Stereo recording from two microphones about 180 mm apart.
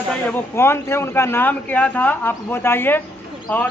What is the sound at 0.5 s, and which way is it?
A man's voice, 15° left (ahead or behind).